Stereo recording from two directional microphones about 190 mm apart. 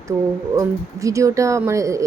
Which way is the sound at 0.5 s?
15° right (ahead or behind).